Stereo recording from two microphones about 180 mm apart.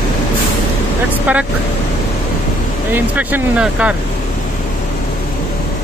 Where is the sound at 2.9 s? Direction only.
10° right (ahead or behind).